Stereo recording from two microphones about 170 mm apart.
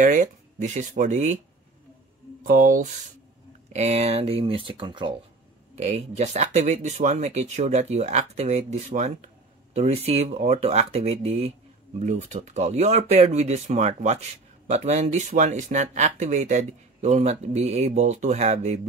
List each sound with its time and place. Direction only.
0.0 s speech: 45° right (ahead or behind)
2.4 s speech: 50° right (ahead or behind)
3.7 s speech: 40° right (ahead or behind)
5.8 s speech: 40° right (ahead or behind)